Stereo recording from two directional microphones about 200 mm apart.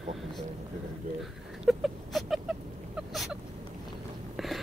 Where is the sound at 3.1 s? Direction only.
Centre (ahead or behind).